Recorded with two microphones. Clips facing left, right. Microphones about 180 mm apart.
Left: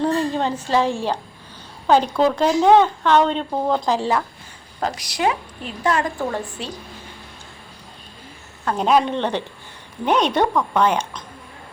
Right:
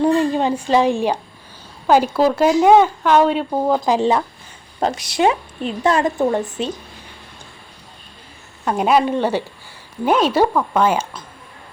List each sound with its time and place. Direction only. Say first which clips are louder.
0.0 s a woman's voice: right 4 dB; 15° right (ahead or behind)
8.6 s speech: right 2 dB; 10° right (ahead or behind)